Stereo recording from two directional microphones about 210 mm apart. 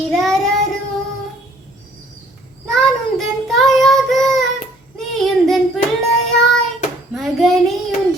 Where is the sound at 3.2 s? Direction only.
Centre (ahead or behind).